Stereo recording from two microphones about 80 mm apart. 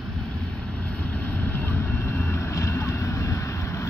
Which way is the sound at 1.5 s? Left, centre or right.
Left.